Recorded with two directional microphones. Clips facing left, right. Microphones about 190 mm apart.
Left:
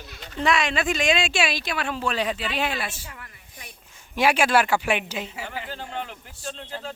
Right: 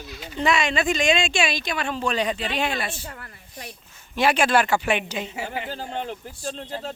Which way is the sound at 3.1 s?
45° right (ahead or behind).